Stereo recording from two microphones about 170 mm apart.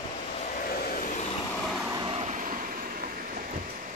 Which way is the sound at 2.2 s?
50° right (ahead or behind).